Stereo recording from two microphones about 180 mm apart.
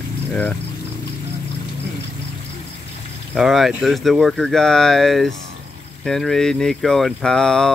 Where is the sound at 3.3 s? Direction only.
Centre (ahead or behind).